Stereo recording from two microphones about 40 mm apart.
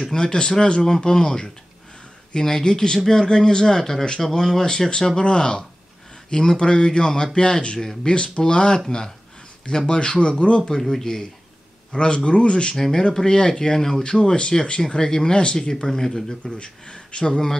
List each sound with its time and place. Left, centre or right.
0.0 s speech: centre
10.8 s speech: centre; by 12.7 s left
12.7 s speech: centre
14.0 s speech: left
16.5 s speech: left
17.3 s speech: centre